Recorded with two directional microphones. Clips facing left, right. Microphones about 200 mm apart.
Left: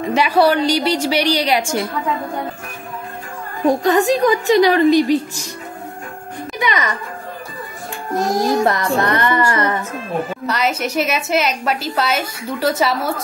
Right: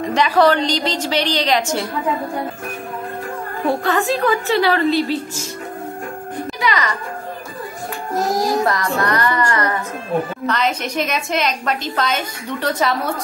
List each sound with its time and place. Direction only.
0.0 s a woman's voice: 10° left (ahead or behind)
3.6 s a woman's voice: 15° left (ahead or behind)
6.6 s a child's voice: 20° left (ahead or behind)
8.2 s music: centre (ahead or behind)
8.6 s child singing: 25° left (ahead or behind)
10.4 s a woman's voice: 5° left (ahead or behind)